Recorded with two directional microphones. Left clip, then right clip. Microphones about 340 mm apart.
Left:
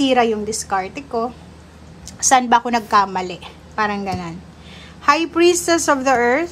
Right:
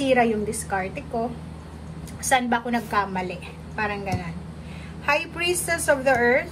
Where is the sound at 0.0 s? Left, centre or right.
Centre.